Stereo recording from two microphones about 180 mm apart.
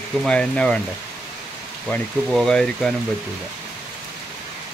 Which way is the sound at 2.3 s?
Centre (ahead or behind).